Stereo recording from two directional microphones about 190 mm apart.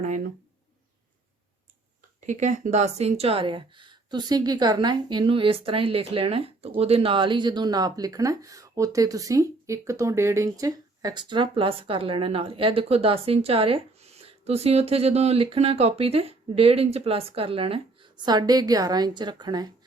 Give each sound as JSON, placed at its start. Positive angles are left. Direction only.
{"t": 2.2, "sound": "speech", "side_deg": -40}